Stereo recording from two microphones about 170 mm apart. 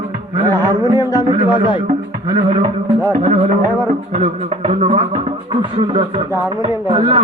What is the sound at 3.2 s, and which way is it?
Speech, 40° right (ahead or behind).